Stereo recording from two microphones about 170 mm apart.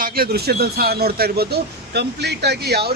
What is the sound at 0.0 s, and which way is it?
Speech, 60° right (ahead or behind).